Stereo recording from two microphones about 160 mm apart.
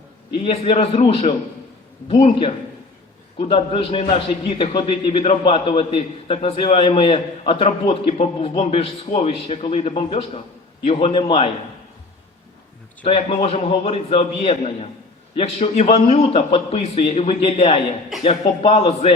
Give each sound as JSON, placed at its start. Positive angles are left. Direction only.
{"t": 0.3, "sound": "a man's voice", "side_deg": 35}
{"t": 13.1, "sound": "a man's voice", "side_deg": 40}